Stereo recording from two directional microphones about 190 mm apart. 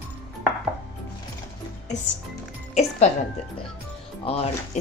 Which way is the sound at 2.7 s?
35° left (ahead or behind).